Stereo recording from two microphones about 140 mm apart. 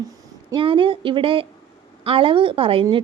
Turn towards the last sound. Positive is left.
turn(degrees=-40)  # may be behind; listen again after turning